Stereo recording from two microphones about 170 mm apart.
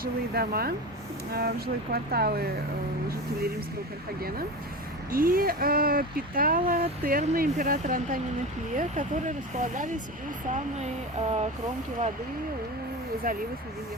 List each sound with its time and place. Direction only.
0.0 s speech: 60° right (ahead or behind)
5.1 s speech: 60° right (ahead or behind); by 11.4 s 40° right (ahead or behind)
13.2 s speech: 55° right (ahead or behind)